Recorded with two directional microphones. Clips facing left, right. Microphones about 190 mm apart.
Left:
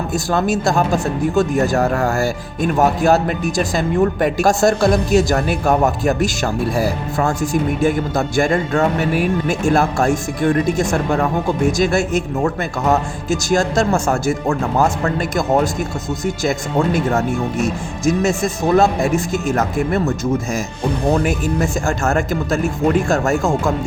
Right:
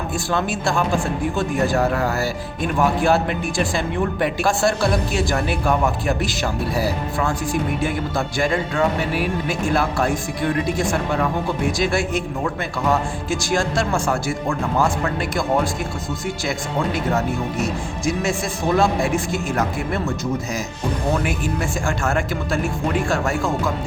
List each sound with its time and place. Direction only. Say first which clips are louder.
0.1 s a man's voice: left 5 dB; 40° left (ahead or behind)